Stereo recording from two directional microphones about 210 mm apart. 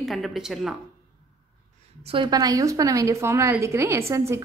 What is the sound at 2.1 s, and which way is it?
A woman's voice, 20° right (ahead or behind).